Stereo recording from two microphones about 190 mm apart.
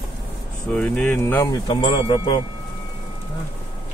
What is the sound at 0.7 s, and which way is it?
Speech, 5° left (ahead or behind).